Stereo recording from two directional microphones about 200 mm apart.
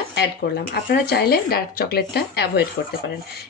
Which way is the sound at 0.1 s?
55° left (ahead or behind).